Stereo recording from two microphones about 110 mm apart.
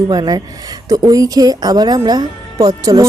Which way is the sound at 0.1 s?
35° right (ahead or behind).